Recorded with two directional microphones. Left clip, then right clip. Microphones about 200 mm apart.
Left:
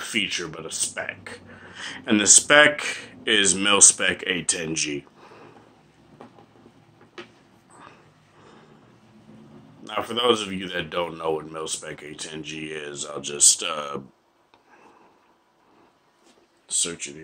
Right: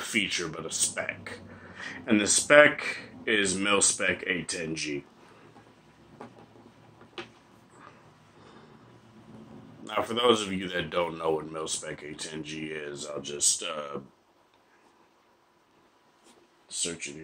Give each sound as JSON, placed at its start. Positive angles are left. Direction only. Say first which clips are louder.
{"t": 0.0, "sound": "speech", "louder": "left 3 dB", "side_deg": 10}
{"t": 9.8, "sound": "speech", "louder": "left 2 dB", "side_deg": 10}
{"t": 16.6, "sound": "speech", "louder": "left 6 dB", "side_deg": 25}